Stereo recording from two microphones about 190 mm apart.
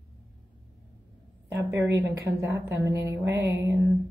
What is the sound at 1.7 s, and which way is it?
Speech, 15° right (ahead or behind).